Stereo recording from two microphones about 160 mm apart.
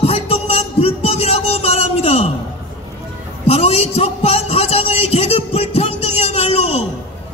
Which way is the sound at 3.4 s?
40° left (ahead or behind).